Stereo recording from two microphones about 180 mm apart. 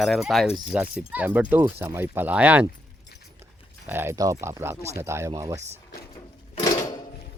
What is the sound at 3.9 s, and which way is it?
Speech, 15° right (ahead or behind).